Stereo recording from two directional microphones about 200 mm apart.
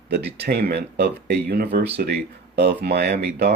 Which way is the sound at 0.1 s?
55° right (ahead or behind).